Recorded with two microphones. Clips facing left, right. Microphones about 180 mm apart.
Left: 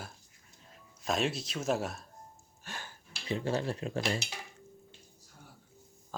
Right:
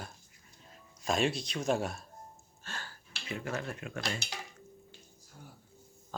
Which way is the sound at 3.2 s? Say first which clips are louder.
Left 5 dB; 30° left (ahead or behind).